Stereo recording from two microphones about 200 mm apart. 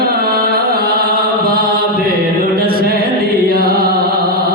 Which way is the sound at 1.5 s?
50° right (ahead or behind).